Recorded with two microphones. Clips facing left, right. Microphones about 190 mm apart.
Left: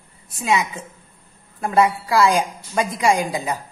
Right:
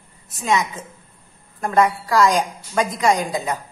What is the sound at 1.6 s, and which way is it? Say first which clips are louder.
A woman's voice: even; 10° left (ahead or behind).